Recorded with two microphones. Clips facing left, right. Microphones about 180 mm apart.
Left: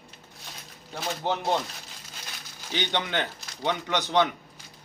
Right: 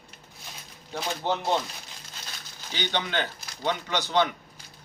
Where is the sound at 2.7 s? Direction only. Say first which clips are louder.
Left 1 dB; 20° left (ahead or behind).